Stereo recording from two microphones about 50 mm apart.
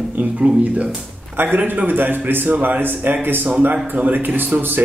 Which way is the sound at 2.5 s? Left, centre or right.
Right.